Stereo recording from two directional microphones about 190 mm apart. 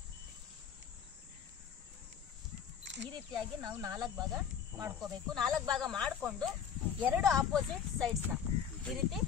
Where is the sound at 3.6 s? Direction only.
20° right (ahead or behind).